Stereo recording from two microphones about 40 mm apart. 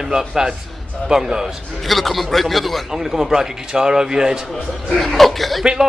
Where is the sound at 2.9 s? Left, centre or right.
Centre.